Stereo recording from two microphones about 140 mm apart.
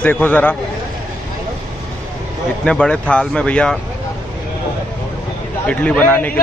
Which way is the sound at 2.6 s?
5° left (ahead or behind).